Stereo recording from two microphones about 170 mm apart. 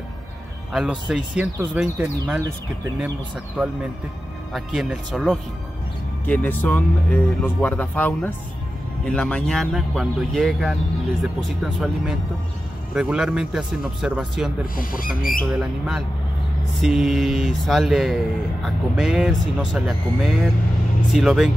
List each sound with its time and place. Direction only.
0.7 s speech: 5° right (ahead or behind)
4.6 s speech: centre (ahead or behind)
6.2 s speech: 10° left (ahead or behind)
14.8 s speech: 55° left (ahead or behind)
15.4 s speech: centre (ahead or behind)